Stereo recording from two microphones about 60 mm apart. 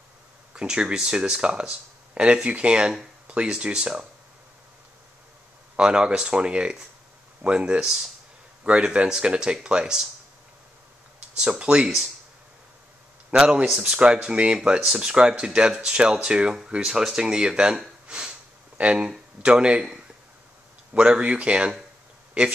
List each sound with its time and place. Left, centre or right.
0.6 s speech: centre
5.8 s speech: centre
8.6 s speech: centre
11.3 s speech: centre
13.3 s speech: centre